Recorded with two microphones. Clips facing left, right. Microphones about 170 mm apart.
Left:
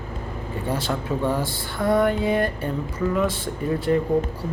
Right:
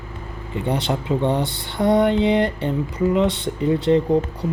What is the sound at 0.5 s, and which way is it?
Speech, 20° right (ahead or behind).